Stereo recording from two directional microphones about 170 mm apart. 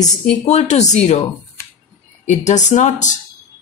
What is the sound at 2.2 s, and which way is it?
Speech, 45° left (ahead or behind).